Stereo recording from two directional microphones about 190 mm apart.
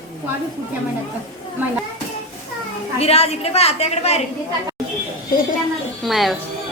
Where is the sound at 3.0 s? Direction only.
35° left (ahead or behind).